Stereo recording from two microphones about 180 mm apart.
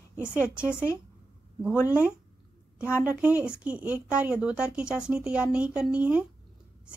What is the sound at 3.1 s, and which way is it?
Speech, 10° right (ahead or behind).